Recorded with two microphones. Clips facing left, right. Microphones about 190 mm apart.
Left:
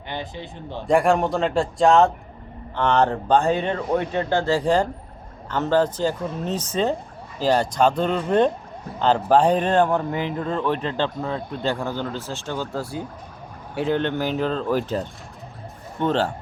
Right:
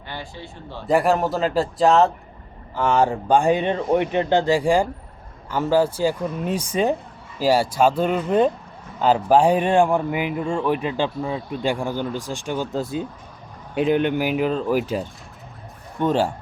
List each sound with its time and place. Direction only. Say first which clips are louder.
0.1 s a man's voice: left 3 dB; 20° left (ahead or behind)
0.9 s a man's voice: even; centre (ahead or behind)